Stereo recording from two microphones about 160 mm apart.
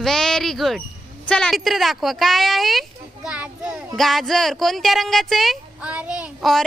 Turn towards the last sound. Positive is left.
turn(degrees=0)  # may be behind; listen again after turning